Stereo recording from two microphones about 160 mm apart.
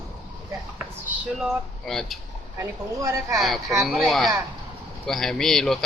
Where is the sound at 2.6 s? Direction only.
20° right (ahead or behind).